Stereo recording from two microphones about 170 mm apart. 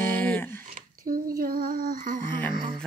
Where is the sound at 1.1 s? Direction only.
50° right (ahead or behind).